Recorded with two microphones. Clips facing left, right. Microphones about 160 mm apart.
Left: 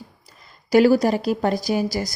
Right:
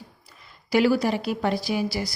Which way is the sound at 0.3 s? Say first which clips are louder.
Left 5 dB; 40° left (ahead or behind).